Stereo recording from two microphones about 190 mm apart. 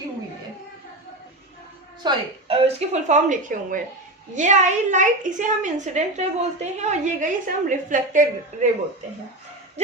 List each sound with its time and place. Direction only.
2.0 s a woman's voice: 30° right (ahead or behind)
9.8 s a woman's voice: 35° right (ahead or behind)